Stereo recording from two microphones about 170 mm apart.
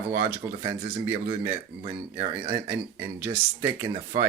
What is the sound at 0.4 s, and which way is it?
Speech, 15° right (ahead or behind).